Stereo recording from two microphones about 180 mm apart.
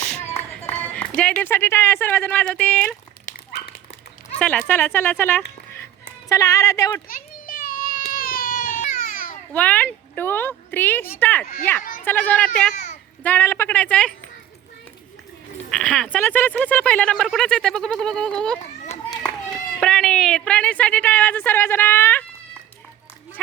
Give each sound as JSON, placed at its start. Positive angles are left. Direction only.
{"t": 0.3, "sound": "speech", "side_deg": 15}
{"t": 4.4, "sound": "a woman's voice", "side_deg": 5}
{"t": 7.1, "sound": "a sound", "side_deg": 50}
{"t": 9.5, "sound": "a woman's voice", "side_deg": 10}
{"t": 11.8, "sound": "a sound", "side_deg": 50}
{"t": 12.0, "sound": "a woman's voice", "side_deg": 10}
{"t": 12.7, "sound": "a sound", "side_deg": 40}
{"t": 13.2, "sound": "a woman's voice", "side_deg": 10}
{"t": 15.7, "sound": "speech", "side_deg": 0}
{"t": 19.8, "sound": "a woman's voice", "side_deg": 5}